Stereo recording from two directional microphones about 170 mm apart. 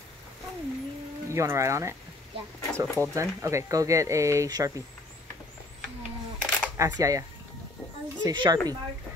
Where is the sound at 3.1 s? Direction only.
15° right (ahead or behind).